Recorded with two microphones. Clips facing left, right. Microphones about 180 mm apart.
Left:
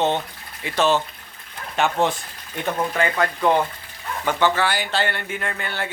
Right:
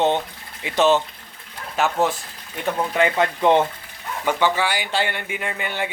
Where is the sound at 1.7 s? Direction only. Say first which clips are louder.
Even; 5° right (ahead or behind).